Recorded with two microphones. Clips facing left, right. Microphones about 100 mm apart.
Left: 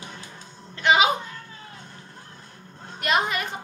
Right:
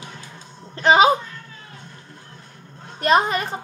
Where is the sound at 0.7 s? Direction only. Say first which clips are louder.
Right 5 dB; 35° right (ahead or behind).